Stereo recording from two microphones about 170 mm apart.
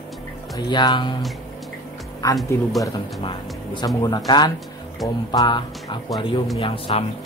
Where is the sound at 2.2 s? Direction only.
20° left (ahead or behind).